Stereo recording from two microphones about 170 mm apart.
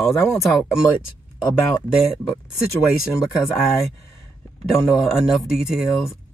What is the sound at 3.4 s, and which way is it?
Speech, centre (ahead or behind).